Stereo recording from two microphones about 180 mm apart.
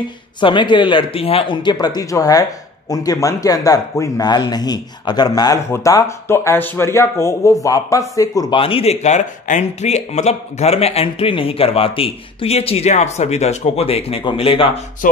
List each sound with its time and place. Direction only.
0.4 s speech: 25° left (ahead or behind)